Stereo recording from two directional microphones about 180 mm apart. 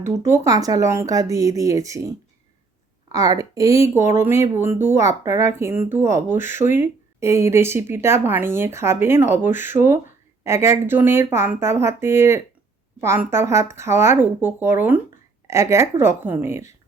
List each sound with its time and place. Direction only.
0.3 s speech: 20° right (ahead or behind)